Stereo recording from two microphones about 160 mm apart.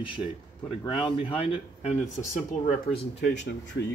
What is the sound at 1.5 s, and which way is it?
Speech, 45° left (ahead or behind).